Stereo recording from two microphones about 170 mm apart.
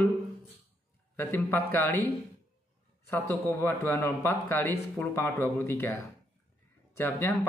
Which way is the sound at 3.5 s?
15° left (ahead or behind).